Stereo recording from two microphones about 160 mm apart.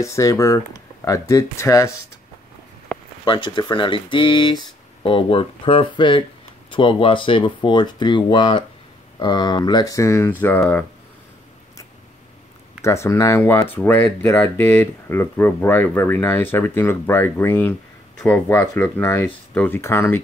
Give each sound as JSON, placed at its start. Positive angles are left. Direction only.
{"t": 0.0, "sound": "speech", "side_deg": 20}
{"t": 2.9, "sound": "a sound", "side_deg": 5}
{"t": 3.3, "sound": "speech", "side_deg": 30}
{"t": 12.8, "sound": "speech", "side_deg": 15}